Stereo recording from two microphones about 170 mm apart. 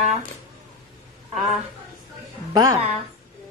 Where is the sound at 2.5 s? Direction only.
20° right (ahead or behind).